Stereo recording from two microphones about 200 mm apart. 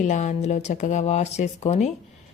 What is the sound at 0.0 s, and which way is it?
A woman's voice, 35° left (ahead or behind).